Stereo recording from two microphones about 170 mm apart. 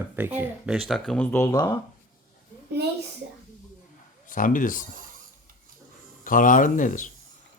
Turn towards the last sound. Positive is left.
turn(degrees=50)  # may be behind; listen again after turning